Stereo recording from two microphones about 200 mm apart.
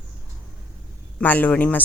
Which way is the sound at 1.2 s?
10° left (ahead or behind).